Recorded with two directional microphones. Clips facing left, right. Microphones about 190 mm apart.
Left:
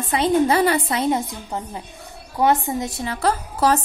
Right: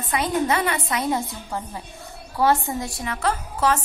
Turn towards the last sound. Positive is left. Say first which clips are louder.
# left 3 dB
turn(degrees=35)  # may be behind; listen again after turning